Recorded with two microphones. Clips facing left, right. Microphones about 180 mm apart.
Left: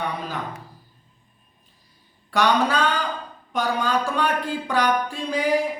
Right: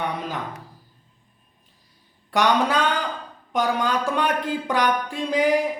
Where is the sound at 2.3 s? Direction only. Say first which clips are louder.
Even; 15° right (ahead or behind).